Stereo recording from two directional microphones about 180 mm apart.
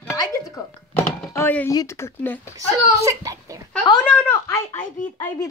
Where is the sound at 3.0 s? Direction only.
15° right (ahead or behind).